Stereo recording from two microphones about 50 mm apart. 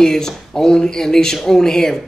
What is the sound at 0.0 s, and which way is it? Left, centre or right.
Speech, centre.